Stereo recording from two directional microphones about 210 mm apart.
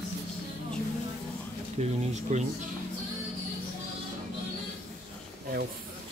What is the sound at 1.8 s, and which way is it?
Speech, 30° right (ahead or behind).